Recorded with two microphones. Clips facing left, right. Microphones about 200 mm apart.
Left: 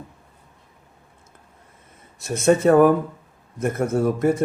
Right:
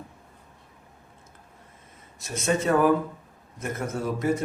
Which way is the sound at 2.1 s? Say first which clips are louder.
Left 8 dB; 60° left (ahead or behind).